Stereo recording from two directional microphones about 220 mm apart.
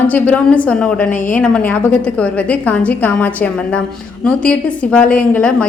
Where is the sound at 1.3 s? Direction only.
5° left (ahead or behind).